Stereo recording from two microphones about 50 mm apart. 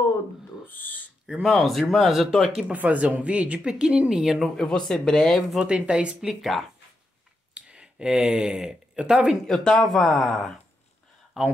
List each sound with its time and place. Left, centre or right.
0.7 s owl: left
1.4 s speech: centre
2.7 s speech: right
4.2 s speech: centre
4.6 s speech: centre
5.6 s speech: right
6.5 s speech: centre
7.5 s speech: centre
9.5 s speech: centre
11.4 s speech: centre